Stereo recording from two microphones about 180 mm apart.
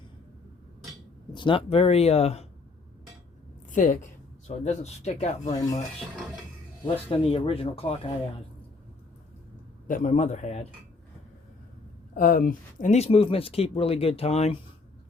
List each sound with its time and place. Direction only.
1.3 s speech: 25° left (ahead or behind)
3.7 s a woman's voice: 45° left (ahead or behind)
5.5 s speech: 20° left (ahead or behind)
6.8 s speech: 30° left (ahead or behind)
9.8 s a man's voice: 50° left (ahead or behind)
12.1 s speech: 50° left (ahead or behind); by 14.6 s 35° left (ahead or behind)